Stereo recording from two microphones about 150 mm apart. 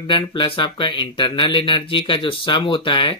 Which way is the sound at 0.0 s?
30° left (ahead or behind).